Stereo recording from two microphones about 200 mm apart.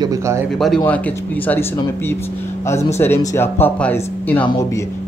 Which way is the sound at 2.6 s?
10° left (ahead or behind).